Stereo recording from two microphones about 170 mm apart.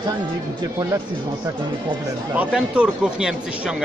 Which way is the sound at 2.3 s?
5° right (ahead or behind).